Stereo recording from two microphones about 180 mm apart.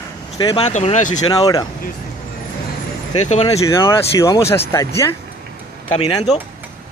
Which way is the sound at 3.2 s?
40° left (ahead or behind).